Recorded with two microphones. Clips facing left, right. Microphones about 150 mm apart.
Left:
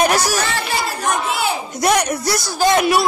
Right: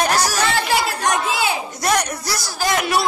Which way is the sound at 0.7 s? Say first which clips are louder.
Right 1 dB; 80° right.